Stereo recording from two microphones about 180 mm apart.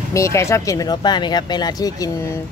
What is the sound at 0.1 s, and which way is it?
Speech, 15° left (ahead or behind).